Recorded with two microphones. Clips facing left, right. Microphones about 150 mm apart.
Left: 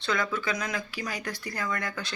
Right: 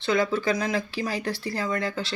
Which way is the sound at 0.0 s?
25° right (ahead or behind).